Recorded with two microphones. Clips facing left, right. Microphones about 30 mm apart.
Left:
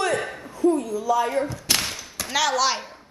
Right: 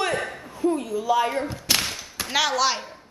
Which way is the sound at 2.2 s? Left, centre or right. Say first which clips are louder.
Even; centre.